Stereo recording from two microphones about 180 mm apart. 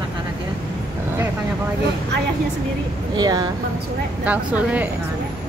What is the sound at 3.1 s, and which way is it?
Speech, 25° right (ahead or behind).